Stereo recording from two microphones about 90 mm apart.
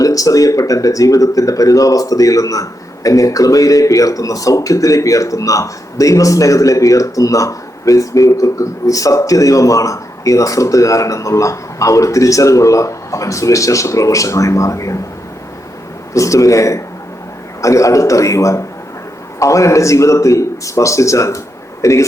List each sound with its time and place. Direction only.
0.0 s speech: 40° left (ahead or behind)
16.1 s a man's voice: 35° left (ahead or behind)